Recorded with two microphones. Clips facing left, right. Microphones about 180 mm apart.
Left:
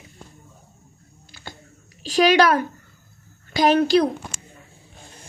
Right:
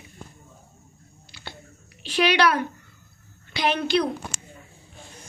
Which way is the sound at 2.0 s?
40° left (ahead or behind).